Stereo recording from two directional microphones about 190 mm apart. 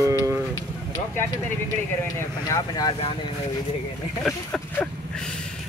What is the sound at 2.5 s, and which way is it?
Speech, 20° left (ahead or behind).